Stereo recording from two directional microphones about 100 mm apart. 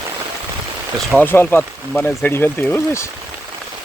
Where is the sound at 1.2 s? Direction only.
20° left (ahead or behind).